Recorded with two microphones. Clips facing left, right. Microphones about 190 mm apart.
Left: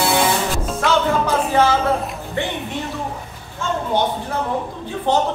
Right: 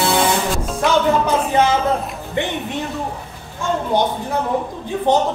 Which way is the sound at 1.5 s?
20° right (ahead or behind).